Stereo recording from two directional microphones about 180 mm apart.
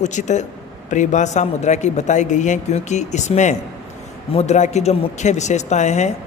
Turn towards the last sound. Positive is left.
turn(degrees=40)  # may be behind; listen again after turning